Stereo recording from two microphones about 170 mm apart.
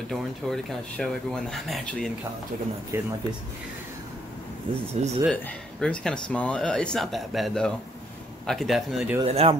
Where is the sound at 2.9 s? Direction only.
15° right (ahead or behind).